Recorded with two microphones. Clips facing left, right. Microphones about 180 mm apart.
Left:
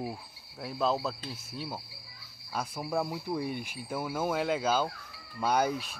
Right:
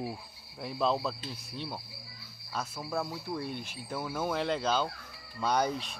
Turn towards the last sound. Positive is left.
turn(degrees=5)  # may be behind; listen again after turning